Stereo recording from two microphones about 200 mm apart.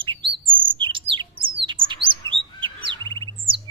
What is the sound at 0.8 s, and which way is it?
Bird, 25° right (ahead or behind).